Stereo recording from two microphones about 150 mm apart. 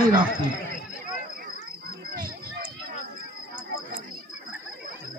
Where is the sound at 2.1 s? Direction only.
80° right.